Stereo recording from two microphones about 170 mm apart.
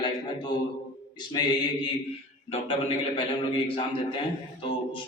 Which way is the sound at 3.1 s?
30° left (ahead or behind).